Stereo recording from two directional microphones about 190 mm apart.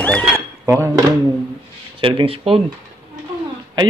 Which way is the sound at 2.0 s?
25° right (ahead or behind).